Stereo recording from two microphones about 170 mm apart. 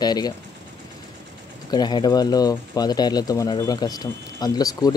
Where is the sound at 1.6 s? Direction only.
25° left (ahead or behind).